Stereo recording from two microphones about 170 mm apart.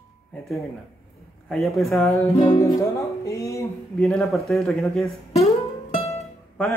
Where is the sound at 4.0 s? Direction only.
Centre (ahead or behind).